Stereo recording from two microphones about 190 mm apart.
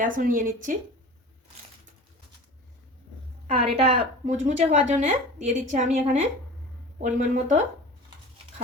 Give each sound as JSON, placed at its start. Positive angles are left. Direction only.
{"t": 0.0, "sound": "a woman's voice", "side_deg": -45}
{"t": 3.4, "sound": "a woman's voice", "side_deg": -35}